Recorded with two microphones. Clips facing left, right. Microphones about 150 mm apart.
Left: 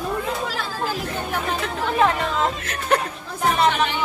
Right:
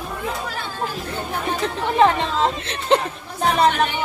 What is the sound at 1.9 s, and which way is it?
Speech, 30° right (ahead or behind).